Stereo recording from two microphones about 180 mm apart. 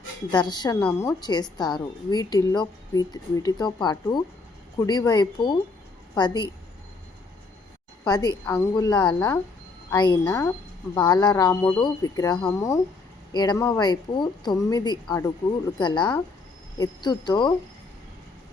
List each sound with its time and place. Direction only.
0.3 s speech: 25° left (ahead or behind)
0.8 s speech: 10° left (ahead or behind)
8.0 s speech: 20° left (ahead or behind)